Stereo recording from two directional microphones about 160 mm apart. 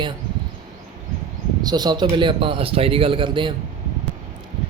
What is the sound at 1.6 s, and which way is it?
Speech, 25° right (ahead or behind).